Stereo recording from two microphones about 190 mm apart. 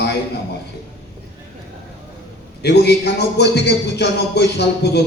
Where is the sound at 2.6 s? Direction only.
60° left (ahead or behind).